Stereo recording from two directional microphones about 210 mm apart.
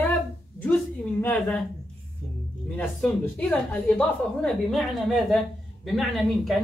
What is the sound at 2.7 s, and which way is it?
Speech, 5° left (ahead or behind).